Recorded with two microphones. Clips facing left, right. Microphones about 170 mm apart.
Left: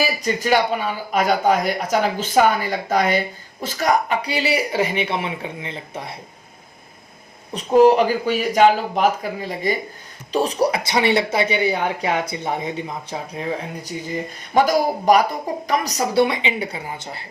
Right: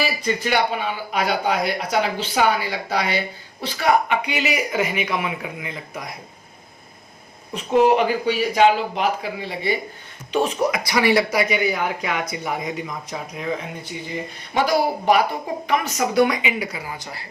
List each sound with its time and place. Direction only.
0.2 s speech: 45° left (ahead or behind)
7.5 s speech: 40° left (ahead or behind)
10.8 s speech: 25° left (ahead or behind)